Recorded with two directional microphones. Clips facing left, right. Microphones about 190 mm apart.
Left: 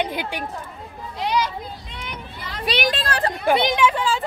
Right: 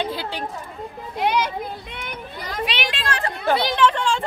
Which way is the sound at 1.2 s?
55° right (ahead or behind).